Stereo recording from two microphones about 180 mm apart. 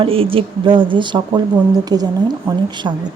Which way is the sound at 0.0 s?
30° right (ahead or behind).